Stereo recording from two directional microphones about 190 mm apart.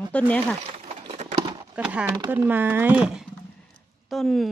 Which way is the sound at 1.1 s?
35° right (ahead or behind).